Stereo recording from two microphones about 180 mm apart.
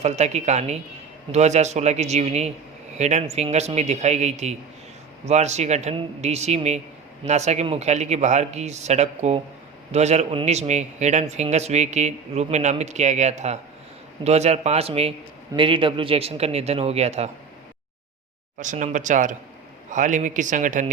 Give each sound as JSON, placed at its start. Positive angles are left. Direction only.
{"t": 0.0, "sound": "a man's voice", "side_deg": -40}
{"t": 18.6, "sound": "speech", "side_deg": -45}